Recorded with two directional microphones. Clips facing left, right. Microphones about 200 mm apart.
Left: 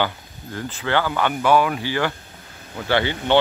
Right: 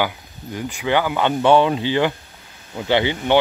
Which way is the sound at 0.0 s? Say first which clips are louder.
Right 1 dB; 15° right (ahead or behind).